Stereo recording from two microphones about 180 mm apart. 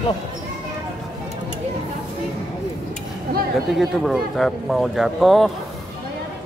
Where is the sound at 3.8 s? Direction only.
Centre (ahead or behind).